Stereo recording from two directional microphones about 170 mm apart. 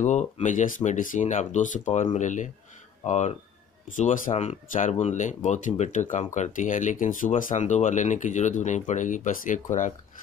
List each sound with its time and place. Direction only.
0.0 s speech: 45° left (ahead or behind)
1.9 s speech: 30° left (ahead or behind)
2.1 s speech: 45° left (ahead or behind)